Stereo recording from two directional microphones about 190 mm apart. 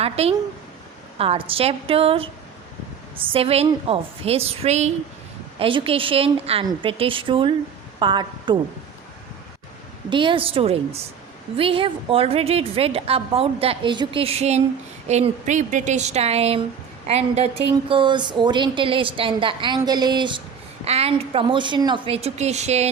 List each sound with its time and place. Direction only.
0.0 s a woman's voice: 30° right (ahead or behind)
10.1 s a woman's voice: 25° right (ahead or behind)